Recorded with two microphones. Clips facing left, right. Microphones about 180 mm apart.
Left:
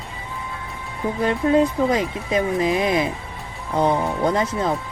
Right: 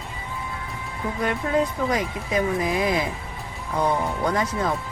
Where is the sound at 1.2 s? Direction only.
25° left (ahead or behind).